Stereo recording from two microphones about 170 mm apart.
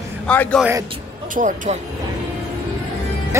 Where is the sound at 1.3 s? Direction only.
50° right (ahead or behind).